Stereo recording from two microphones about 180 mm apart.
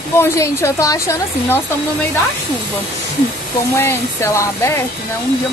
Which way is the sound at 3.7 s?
15° left (ahead or behind).